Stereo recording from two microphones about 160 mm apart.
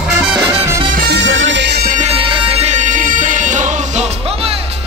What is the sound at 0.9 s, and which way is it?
Music, 85° right.